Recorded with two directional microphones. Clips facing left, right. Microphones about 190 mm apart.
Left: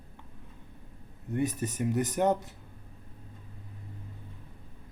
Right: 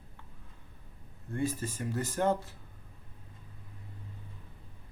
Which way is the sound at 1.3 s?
20° left (ahead or behind).